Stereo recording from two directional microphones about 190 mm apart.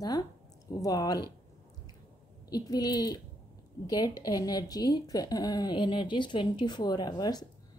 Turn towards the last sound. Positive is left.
turn(degrees=20)  # may be behind; listen again after turning